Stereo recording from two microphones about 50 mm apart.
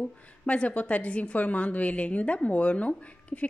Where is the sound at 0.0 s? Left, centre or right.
Left.